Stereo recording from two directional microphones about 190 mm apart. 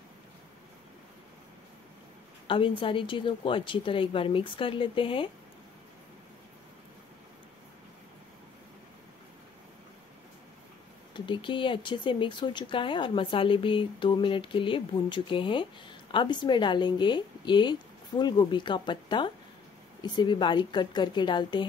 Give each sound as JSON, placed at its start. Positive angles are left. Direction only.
{"t": 2.4, "sound": "speech", "side_deg": 25}
{"t": 11.1, "sound": "speech", "side_deg": 25}